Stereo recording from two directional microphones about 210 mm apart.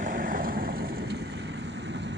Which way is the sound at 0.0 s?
40° right (ahead or behind).